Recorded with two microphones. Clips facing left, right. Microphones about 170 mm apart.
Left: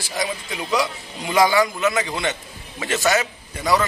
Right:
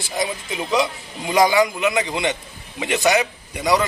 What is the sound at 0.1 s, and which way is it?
A man's voice, 20° right (ahead or behind).